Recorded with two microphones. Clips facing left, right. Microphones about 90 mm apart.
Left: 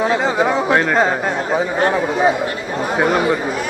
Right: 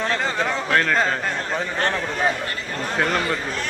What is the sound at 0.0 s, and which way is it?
Speech, 10° left (ahead or behind).